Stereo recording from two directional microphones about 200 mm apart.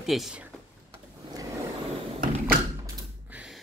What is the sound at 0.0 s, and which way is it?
Speech, centre (ahead or behind).